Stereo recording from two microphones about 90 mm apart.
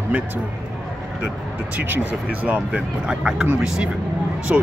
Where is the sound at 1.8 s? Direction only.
15° right (ahead or behind).